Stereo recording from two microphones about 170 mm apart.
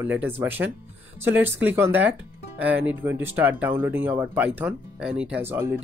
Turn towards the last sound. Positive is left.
turn(degrees=-15)  # may be behind; listen again after turning